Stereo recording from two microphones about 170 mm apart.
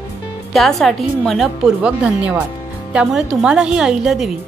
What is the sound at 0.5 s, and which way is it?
Speech, centre (ahead or behind).